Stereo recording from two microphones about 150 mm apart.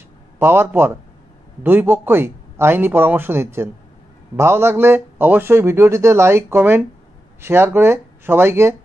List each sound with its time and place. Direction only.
0.4 s speech: 15° right (ahead or behind)